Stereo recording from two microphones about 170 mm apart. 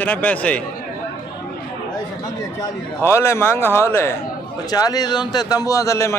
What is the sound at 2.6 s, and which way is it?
A man's voice, 15° left (ahead or behind).